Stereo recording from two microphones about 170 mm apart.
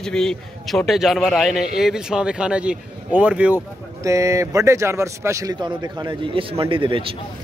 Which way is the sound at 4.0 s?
20° right (ahead or behind).